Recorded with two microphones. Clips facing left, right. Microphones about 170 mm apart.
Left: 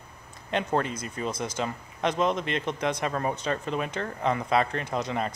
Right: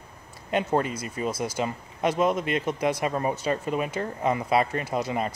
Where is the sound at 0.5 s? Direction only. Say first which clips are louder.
Right 2 dB; 5° right (ahead or behind).